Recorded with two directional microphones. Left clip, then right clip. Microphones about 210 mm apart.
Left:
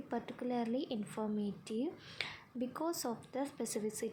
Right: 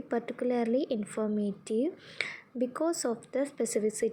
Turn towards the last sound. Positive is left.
turn(degrees=-10)  # may be behind; listen again after turning